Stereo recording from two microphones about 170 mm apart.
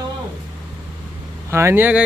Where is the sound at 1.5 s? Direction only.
15° right (ahead or behind).